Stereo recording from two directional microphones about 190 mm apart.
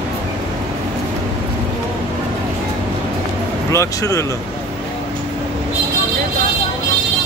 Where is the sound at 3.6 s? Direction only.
15° left (ahead or behind).